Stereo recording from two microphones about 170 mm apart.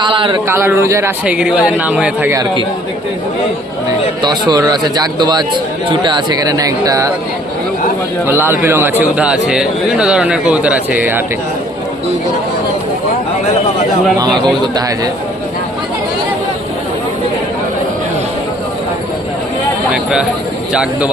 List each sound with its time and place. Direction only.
0.0 s speech: 30° right (ahead or behind)
0.4 s speech: 15° right (ahead or behind)
1.2 s speech: 5° right (ahead or behind)
2.3 s speech: 25° right (ahead or behind)
4.2 s speech: 25° right (ahead or behind)
8.3 s speech: 15° right (ahead or behind)
14.2 s speech: 25° right (ahead or behind)
19.9 s speech: 5° right (ahead or behind)